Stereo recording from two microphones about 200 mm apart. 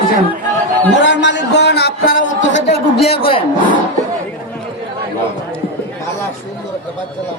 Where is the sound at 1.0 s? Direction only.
65° left (ahead or behind).